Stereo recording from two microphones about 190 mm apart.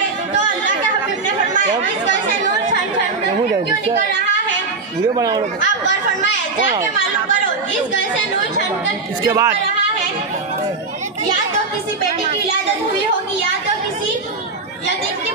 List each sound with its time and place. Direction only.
5.1 s speech: 20° right (ahead or behind)
9.2 s a child's voice: 15° right (ahead or behind)